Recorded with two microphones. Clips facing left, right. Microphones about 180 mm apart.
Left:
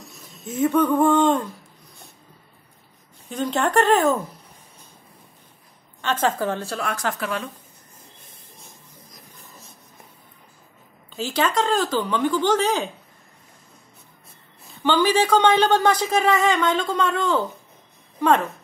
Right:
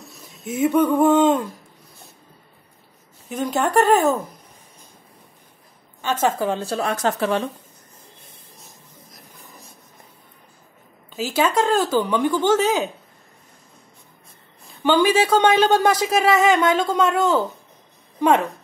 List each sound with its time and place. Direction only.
0.0 s speech: centre (ahead or behind)
3.3 s speech: 10° right (ahead or behind)
6.2 s a woman's voice: 15° right (ahead or behind); by 7.4 s 30° right (ahead or behind)
11.1 s speech: 10° right (ahead or behind)
14.8 s speech: 10° right (ahead or behind)